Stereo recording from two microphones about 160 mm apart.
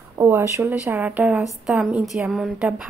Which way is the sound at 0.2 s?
15° right (ahead or behind).